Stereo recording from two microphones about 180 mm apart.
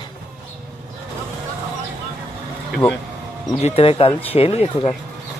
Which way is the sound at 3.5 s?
35° left (ahead or behind).